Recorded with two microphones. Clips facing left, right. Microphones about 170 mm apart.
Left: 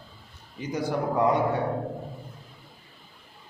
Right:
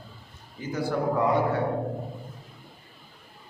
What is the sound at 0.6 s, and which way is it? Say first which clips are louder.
Speech: even; 20° left (ahead or behind).